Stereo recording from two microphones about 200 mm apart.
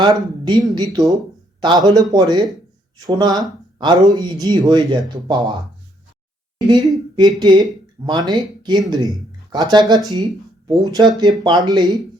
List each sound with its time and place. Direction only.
0.0 s speech: 20° right (ahead or behind)
6.7 s speech: 20° right (ahead or behind)